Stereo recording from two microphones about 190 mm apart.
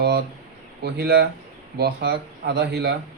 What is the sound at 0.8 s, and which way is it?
Speech, 60° right (ahead or behind).